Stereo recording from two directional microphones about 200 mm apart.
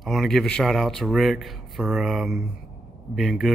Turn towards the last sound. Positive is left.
turn(degrees=0)  # may be behind; listen again after turning